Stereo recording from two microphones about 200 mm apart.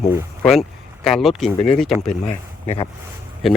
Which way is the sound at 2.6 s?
30° left (ahead or behind).